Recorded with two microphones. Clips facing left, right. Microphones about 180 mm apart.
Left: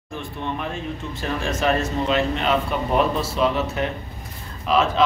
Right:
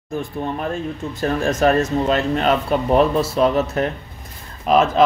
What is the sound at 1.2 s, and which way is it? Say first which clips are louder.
Speech: right 6 dB; 40° right (ahead or behind).